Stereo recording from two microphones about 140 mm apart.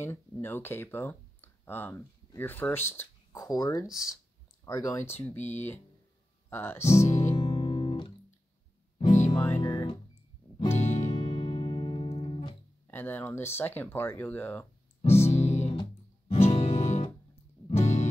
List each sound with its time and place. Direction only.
0.0 s speech: 15° left (ahead or behind)
7.1 s music: 60° left (ahead or behind)
7.3 s music: 45° left (ahead or behind)
9.3 s music: 15° left (ahead or behind)
9.6 s music: 30° left (ahead or behind)
10.7 s music: 55° left (ahead or behind)
12.8 s speech: 15° left (ahead or behind)
15.0 s music: 50° left (ahead or behind)